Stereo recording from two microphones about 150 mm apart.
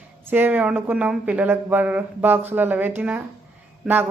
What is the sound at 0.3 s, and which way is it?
Speech, 10° right (ahead or behind).